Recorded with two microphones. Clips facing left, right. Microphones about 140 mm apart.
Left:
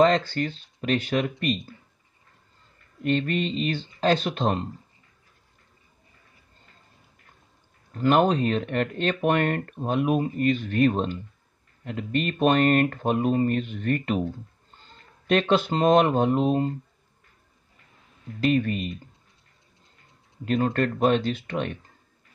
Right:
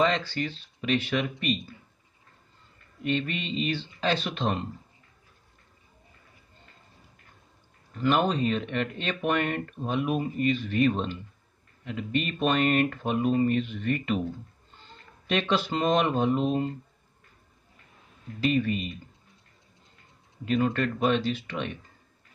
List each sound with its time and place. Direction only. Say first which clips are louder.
0.0 s speech: left 6 dB; 50° left (ahead or behind)
3.0 s speech: left 5 dB; 45° left (ahead or behind)
7.9 s speech: left 4 dB; 45° left (ahead or behind)
15.2 s speech: left 5 dB; 50° left (ahead or behind)
18.4 s speech: left 3 dB; 50° left (ahead or behind)
20.4 s speech: left 2 dB; 45° left (ahead or behind)